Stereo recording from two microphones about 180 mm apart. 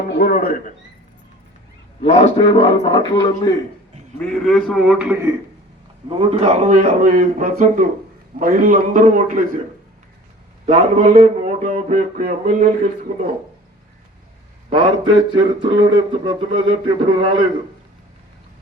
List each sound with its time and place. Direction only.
0.1 s a man's voice: 55° left (ahead or behind)
2.0 s a man's voice: 40° left (ahead or behind); by 3.6 s 20° left (ahead or behind)
4.2 s a man's voice: 5° left (ahead or behind)
6.1 s speech: 35° right (ahead or behind)
10.7 s speech: 40° right (ahead or behind)
14.7 s speech: 30° right (ahead or behind)